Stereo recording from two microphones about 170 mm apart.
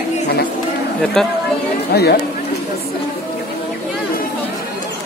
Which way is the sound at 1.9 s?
70° left (ahead or behind).